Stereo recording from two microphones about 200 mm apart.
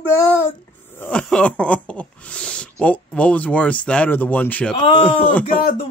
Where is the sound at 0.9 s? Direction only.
5° left (ahead or behind).